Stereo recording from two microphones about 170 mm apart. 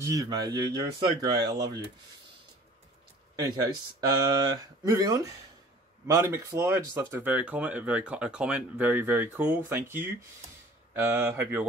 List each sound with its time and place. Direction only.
0.0 s speech: 20° right (ahead or behind)
3.3 s speech: 20° right (ahead or behind)